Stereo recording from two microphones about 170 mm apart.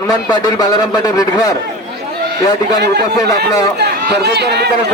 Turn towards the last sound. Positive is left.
turn(degrees=-75)  # may be behind; listen again after turning